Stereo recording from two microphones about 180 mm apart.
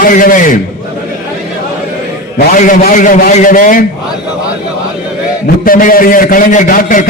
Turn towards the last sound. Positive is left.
turn(degrees=50)  # may be behind; listen again after turning